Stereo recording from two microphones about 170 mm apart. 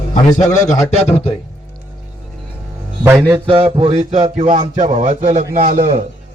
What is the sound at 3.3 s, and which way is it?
A man's voice, 30° right (ahead or behind).